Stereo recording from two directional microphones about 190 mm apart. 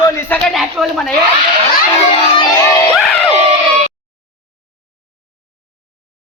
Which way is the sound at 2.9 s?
5° left (ahead or behind).